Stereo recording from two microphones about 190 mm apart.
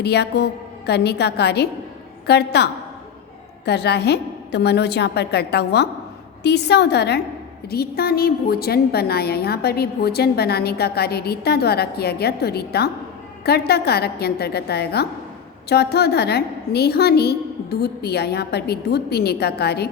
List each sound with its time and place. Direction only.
0.0 s a woman's voice: 60° left (ahead or behind)
3.7 s a woman's voice: 60° left (ahead or behind)